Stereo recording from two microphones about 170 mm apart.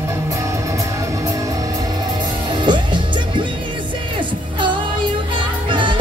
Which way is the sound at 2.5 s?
25° right (ahead or behind).